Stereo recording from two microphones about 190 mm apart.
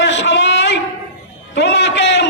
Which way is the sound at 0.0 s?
70° left (ahead or behind).